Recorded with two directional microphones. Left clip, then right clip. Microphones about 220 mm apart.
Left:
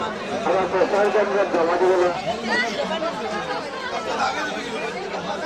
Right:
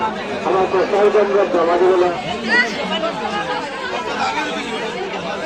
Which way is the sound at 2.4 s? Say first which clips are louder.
Right 8 dB; 50° left (ahead or behind).